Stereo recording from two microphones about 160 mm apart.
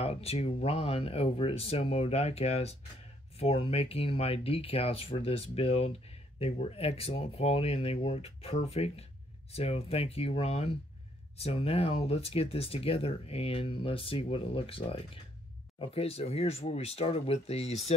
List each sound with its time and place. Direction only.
0.0 s speech: 40° left (ahead or behind)